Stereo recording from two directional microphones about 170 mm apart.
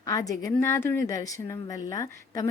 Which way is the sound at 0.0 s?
20° left (ahead or behind).